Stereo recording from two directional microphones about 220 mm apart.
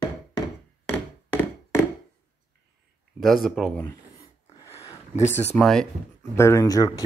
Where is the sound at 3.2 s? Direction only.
Centre (ahead or behind).